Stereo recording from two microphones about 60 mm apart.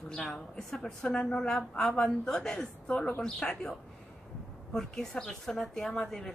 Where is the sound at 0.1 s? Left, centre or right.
Left.